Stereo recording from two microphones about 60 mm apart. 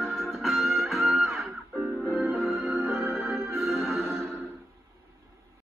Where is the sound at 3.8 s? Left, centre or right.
Centre.